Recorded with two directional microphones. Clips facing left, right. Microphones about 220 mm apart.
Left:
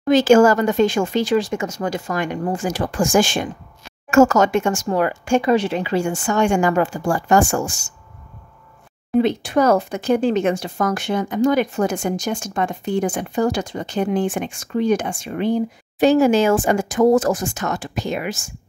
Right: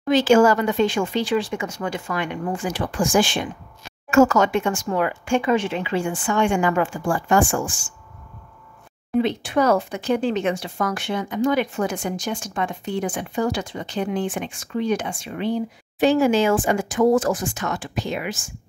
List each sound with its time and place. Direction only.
0.0 s speech: 45° left (ahead or behind)
9.2 s speech: 45° left (ahead or behind)